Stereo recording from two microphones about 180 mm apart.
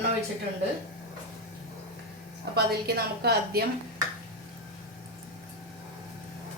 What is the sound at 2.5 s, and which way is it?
A woman's voice, 60° right (ahead or behind).